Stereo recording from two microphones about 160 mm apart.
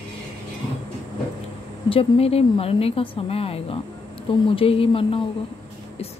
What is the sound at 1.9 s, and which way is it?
A woman's voice, 35° left (ahead or behind).